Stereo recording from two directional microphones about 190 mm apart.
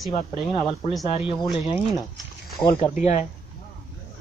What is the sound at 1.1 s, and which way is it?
Speech, 30° left (ahead or behind).